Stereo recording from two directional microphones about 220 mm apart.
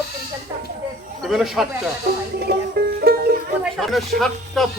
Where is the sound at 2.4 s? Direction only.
45° right (ahead or behind).